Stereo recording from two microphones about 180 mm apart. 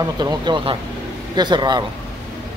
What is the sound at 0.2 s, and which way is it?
Speech, 25° right (ahead or behind).